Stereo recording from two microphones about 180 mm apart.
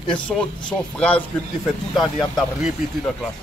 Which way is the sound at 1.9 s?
Centre (ahead or behind).